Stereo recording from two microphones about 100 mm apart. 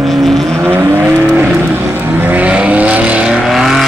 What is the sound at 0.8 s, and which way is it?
Vehicle, 30° right (ahead or behind).